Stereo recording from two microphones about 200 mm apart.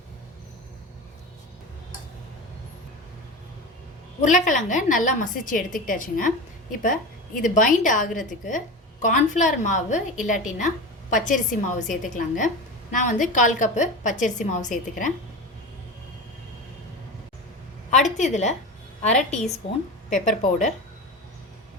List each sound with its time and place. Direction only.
4.2 s a woman's voice: 40° left (ahead or behind)
18.2 s a woman's voice: 35° left (ahead or behind)